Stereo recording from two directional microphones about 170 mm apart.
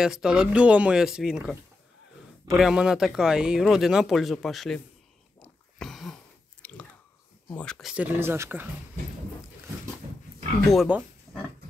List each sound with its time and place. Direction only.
0.0 s speech: 5° right (ahead or behind)
5.8 s a sound: centre (ahead or behind)
6.6 s chewing: 10° left (ahead or behind)
7.4 s speech: 5° left (ahead or behind); by 8.6 s 15° right (ahead or behind)
10.7 s speech: centre (ahead or behind)